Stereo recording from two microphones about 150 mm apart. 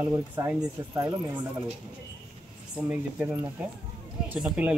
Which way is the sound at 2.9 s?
10° right (ahead or behind).